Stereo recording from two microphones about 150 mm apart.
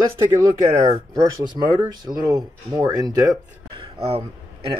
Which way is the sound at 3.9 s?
40° right (ahead or behind).